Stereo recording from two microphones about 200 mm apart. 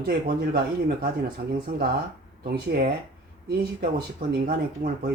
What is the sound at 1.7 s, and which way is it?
Speech, 50° right (ahead or behind).